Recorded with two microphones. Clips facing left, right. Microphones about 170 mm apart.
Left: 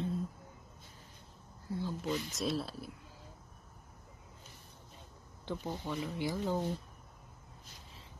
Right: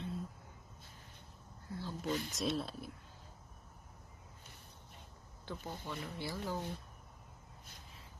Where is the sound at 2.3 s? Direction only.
Centre (ahead or behind).